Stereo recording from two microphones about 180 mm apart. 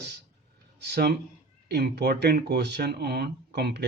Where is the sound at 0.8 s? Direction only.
65° right (ahead or behind).